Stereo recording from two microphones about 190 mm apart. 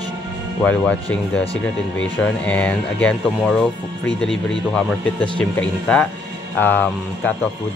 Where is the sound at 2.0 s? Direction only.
5° left (ahead or behind).